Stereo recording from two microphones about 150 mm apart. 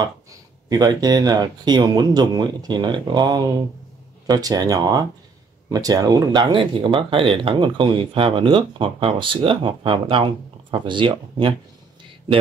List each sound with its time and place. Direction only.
0.7 s speech: 25° right (ahead or behind)